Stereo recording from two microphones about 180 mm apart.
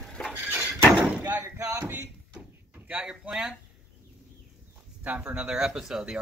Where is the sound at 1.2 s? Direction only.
10° right (ahead or behind).